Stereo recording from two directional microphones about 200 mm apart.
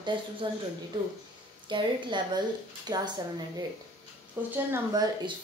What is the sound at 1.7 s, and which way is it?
Speech, 20° right (ahead or behind).